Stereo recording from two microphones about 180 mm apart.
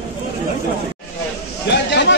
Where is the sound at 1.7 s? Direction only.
75° left (ahead or behind).